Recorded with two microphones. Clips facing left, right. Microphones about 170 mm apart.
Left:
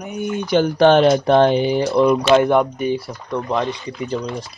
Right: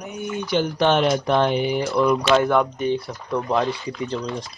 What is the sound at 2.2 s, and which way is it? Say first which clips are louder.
Speech: left 4 dB; 15° left (ahead or behind).